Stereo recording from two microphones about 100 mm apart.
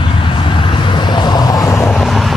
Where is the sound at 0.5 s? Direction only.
50° left (ahead or behind).